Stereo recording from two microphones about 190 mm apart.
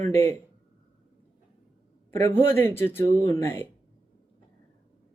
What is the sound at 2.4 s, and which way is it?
Speech, 10° left (ahead or behind).